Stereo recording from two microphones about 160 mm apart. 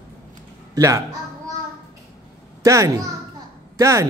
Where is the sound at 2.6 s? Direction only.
20° right (ahead or behind).